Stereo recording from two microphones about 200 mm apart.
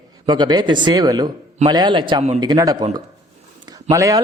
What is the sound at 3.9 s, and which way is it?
Speech, 15° right (ahead or behind).